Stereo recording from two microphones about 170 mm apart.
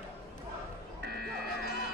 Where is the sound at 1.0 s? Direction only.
65° right (ahead or behind).